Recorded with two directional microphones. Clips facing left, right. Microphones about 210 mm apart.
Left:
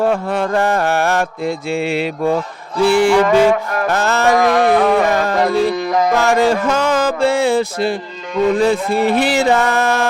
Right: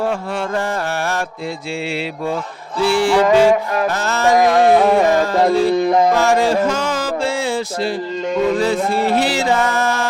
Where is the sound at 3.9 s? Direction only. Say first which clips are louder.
Left 4 dB; 60° left (ahead or behind).